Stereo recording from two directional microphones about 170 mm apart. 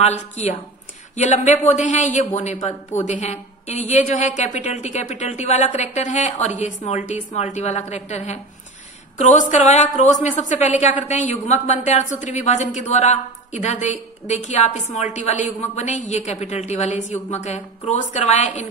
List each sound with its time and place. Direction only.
0.0 s a woman's voice: 40° left (ahead or behind)